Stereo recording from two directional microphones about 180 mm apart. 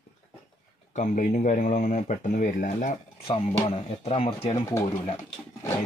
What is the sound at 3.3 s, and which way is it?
Speech, 35° left (ahead or behind).